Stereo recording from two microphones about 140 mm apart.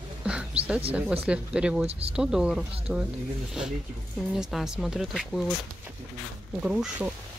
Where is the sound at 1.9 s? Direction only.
45° right (ahead or behind).